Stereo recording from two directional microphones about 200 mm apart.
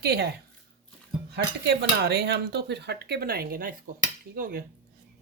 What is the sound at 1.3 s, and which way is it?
Speech, 55° right (ahead or behind).